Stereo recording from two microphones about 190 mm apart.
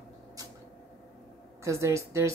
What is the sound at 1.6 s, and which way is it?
Speech, 15° right (ahead or behind).